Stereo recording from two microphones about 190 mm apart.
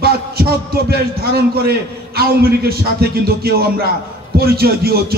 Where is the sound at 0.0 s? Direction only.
55° right (ahead or behind).